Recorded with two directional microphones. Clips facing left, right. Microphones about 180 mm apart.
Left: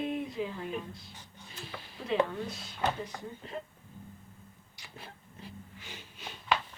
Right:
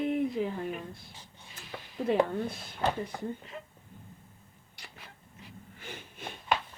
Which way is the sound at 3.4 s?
30° left (ahead or behind).